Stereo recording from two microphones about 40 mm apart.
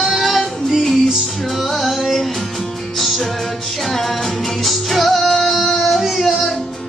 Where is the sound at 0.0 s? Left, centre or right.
Centre.